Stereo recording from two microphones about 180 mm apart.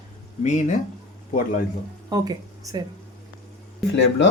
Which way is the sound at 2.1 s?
20° right (ahead or behind).